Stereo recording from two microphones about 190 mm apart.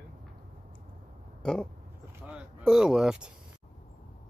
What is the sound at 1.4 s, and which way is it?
Speech, centre (ahead or behind).